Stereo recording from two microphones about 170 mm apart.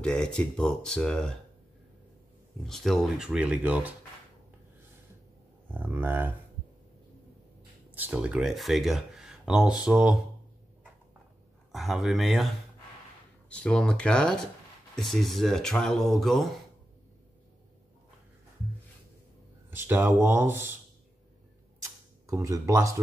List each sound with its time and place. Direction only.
0.0 s speech: 5° left (ahead or behind)
2.6 s speech: centre (ahead or behind)
5.7 s speech: 10° right (ahead or behind)
7.9 s speech: 5° right (ahead or behind)
11.7 s speech: centre (ahead or behind)
19.7 s speech: 10° right (ahead or behind)
21.8 s a sound: 20° right (ahead or behind)